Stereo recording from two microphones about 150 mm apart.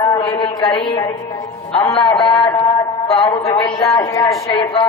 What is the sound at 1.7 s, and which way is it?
A man's voice, 35° left (ahead or behind).